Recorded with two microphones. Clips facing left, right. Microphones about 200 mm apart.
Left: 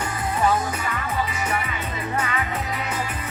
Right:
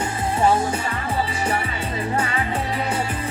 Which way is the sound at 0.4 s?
30° right (ahead or behind).